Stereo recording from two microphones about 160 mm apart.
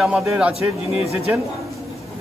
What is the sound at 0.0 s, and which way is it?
Speech, centre (ahead or behind).